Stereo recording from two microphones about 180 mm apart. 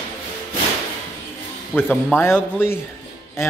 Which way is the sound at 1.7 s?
10° left (ahead or behind).